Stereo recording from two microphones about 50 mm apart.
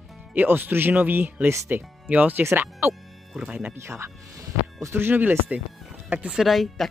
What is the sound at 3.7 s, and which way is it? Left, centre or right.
Speech, right.